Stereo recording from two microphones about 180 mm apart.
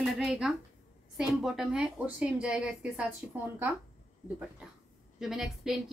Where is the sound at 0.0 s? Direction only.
Centre (ahead or behind).